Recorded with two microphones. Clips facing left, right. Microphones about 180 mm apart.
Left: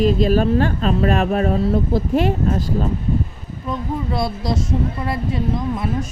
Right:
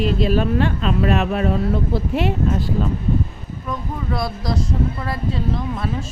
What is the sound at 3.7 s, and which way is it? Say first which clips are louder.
Speech: left 3 dB; 25° left (ahead or behind).